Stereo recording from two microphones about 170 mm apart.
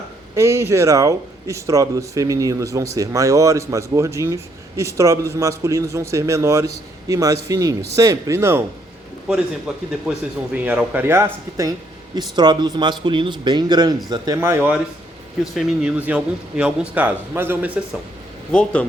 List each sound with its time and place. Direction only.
0.3 s speech: 15° right (ahead or behind)
9.7 s speech: 5° right (ahead or behind); by 14.3 s 25° right (ahead or behind)
14.4 s speech: 10° right (ahead or behind)
18.5 s speech: 5° left (ahead or behind)